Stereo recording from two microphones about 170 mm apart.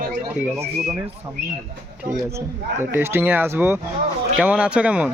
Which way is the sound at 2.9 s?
10° right (ahead or behind).